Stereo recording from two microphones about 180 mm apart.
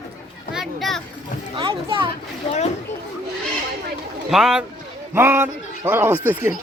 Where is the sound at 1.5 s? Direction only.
25° right (ahead or behind).